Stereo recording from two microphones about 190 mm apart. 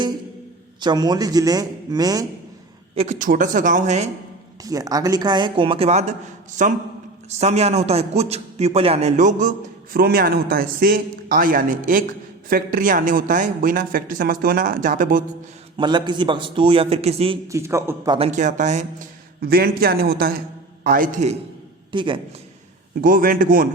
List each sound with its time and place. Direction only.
0.8 s a man's voice: 20° right (ahead or behind)
2.9 s speech: 30° right (ahead or behind)
3.2 s speech: 45° right (ahead or behind)
4.6 s a man's voice: 20° right (ahead or behind); by 9.5 s 40° right (ahead or behind)
9.9 s speech: 50° right (ahead or behind)
15.8 s a man's voice: 25° right (ahead or behind)
17.5 s a man's voice: 15° right (ahead or behind)
18.1 s speech: 35° right (ahead or behind)
21.9 s a man's voice: 25° right (ahead or behind)
23.0 s speech: 50° right (ahead or behind)